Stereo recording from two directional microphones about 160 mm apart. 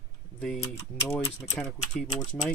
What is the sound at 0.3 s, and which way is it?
Speech, 5° left (ahead or behind).